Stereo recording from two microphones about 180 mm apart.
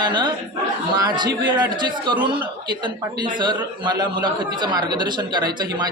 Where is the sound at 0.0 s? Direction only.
25° right (ahead or behind).